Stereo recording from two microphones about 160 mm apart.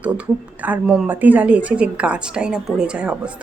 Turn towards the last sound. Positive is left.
turn(degrees=-5)  # may be behind; listen again after turning